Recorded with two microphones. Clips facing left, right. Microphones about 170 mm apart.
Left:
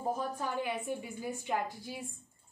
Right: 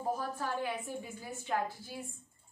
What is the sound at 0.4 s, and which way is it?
A woman's voice, 15° left (ahead or behind).